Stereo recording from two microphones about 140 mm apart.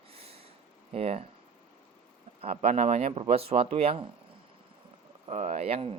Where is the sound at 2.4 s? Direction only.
45° right (ahead or behind).